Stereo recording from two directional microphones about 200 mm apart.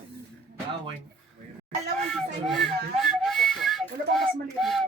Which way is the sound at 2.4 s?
Centre (ahead or behind).